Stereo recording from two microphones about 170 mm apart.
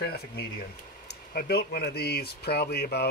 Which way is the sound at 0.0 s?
70° left (ahead or behind).